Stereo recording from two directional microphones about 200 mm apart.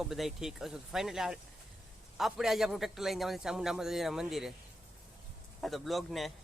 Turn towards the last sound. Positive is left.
turn(degrees=0)  # may be behind; listen again after turning